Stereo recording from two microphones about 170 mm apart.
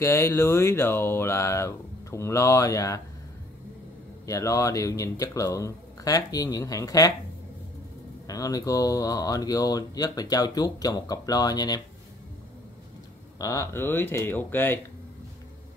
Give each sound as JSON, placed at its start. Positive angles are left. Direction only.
{"t": 0.0, "sound": "speech", "side_deg": 15}
{"t": 4.3, "sound": "speech", "side_deg": 20}
{"t": 8.3, "sound": "speech", "side_deg": 20}
{"t": 13.4, "sound": "speech", "side_deg": 20}